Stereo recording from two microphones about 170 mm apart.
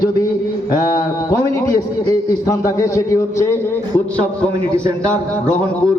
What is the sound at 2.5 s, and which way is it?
A man's voice, 20° left (ahead or behind).